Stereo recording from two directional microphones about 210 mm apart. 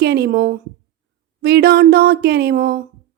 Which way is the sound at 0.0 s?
50° right (ahead or behind).